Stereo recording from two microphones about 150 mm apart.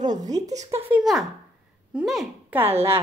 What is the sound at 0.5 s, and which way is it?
Speech, 45° right (ahead or behind).